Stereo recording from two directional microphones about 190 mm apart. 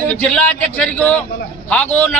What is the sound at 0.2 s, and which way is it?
A man's voice, 5° left (ahead or behind).